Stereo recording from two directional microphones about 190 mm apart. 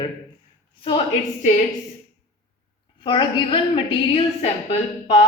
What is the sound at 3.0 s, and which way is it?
A woman's voice, 25° left (ahead or behind).